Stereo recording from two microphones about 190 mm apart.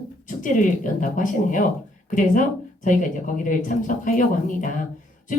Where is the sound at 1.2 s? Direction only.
45° left (ahead or behind).